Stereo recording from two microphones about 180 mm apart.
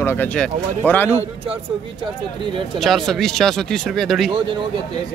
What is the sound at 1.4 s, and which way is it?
Speech, 30° right (ahead or behind).